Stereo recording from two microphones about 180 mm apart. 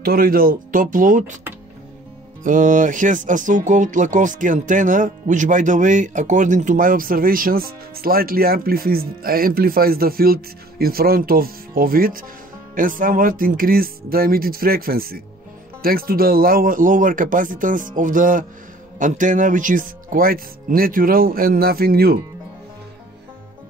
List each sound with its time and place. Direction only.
0.0 s speech: 55° right (ahead or behind)
2.4 s speech: 45° right (ahead or behind)